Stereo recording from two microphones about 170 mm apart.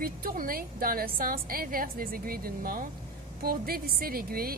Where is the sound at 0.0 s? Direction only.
55° right (ahead or behind).